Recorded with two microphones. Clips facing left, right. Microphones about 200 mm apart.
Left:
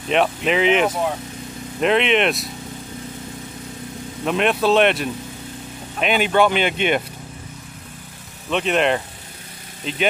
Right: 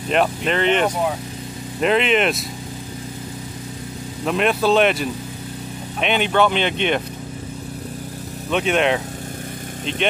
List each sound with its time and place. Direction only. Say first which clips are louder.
0.1 s speech: left 1 dB; centre (ahead or behind)
4.2 s speech: even; centre (ahead or behind)
8.5 s speech: even; centre (ahead or behind)